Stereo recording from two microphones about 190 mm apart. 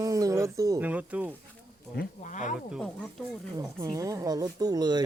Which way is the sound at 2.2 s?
40° left (ahead or behind).